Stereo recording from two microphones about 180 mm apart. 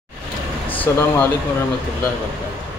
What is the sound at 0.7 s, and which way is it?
Speech, 10° left (ahead or behind).